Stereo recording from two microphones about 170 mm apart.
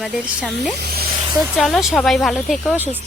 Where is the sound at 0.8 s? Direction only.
65° right (ahead or behind).